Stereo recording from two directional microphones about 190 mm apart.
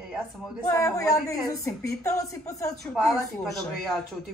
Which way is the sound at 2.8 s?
Centre (ahead or behind).